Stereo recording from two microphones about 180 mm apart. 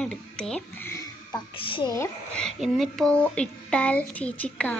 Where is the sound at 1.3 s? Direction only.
30° left (ahead or behind).